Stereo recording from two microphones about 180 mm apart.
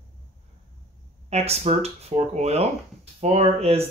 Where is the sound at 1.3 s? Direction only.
35° right (ahead or behind).